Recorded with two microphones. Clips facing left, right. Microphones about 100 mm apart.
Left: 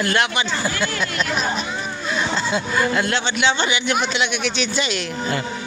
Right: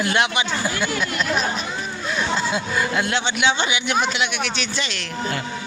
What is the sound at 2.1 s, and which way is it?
Speech, 5° right (ahead or behind).